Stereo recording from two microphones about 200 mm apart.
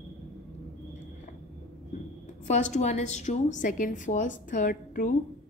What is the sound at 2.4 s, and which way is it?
A woman's voice, 35° left (ahead or behind).